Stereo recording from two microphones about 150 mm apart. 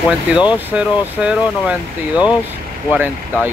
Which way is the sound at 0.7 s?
10° right (ahead or behind).